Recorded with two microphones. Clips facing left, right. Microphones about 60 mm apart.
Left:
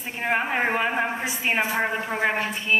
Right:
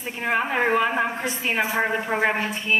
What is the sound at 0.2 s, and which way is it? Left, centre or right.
A woman's voice, centre.